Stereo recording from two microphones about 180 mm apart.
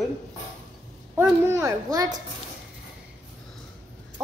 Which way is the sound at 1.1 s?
10° right (ahead or behind).